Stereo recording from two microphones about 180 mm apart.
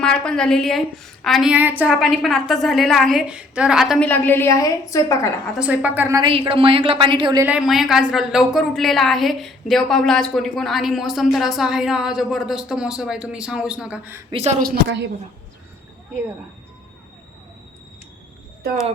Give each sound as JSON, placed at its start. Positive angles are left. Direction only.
{"t": 0.0, "sound": "a woman's voice", "side_deg": 5}
{"t": 5.5, "sound": "speech", "side_deg": -5}
{"t": 6.2, "sound": "a woman's voice", "side_deg": -30}
{"t": 7.4, "sound": "a woman's voice", "side_deg": -5}
{"t": 14.3, "sound": "speech", "side_deg": -30}
{"t": 14.6, "sound": "speech", "side_deg": -65}